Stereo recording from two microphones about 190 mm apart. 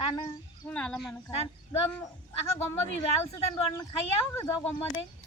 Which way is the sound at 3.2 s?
15° left (ahead or behind).